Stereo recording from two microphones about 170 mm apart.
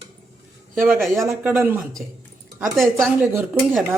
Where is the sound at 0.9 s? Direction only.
Centre (ahead or behind).